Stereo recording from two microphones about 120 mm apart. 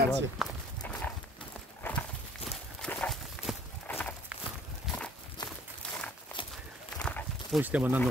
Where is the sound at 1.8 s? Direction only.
15° left (ahead or behind).